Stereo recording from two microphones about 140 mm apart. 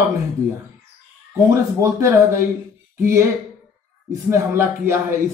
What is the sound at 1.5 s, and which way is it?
Speech, 20° right (ahead or behind).